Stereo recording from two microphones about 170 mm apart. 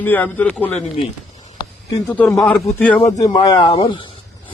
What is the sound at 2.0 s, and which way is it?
A man's voice, 10° left (ahead or behind).